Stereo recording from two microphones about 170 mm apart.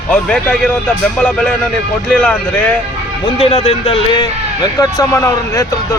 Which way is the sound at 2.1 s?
5° left (ahead or behind).